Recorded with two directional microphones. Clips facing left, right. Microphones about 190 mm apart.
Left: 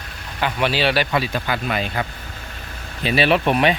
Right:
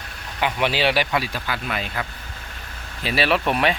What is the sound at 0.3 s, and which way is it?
Speech, 15° right (ahead or behind).